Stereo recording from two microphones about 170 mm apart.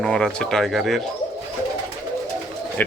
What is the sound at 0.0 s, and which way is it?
Speech, 5° left (ahead or behind).